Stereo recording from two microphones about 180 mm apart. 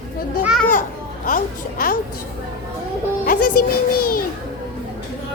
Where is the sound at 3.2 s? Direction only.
55° left (ahead or behind).